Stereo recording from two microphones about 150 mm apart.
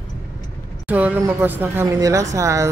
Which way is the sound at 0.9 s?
10° right (ahead or behind).